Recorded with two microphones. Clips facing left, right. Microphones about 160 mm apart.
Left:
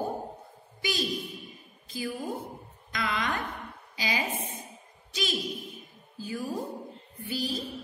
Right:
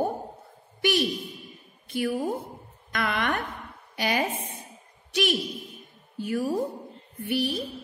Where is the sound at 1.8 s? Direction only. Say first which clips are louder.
Right 7 dB; 70° right (ahead or behind).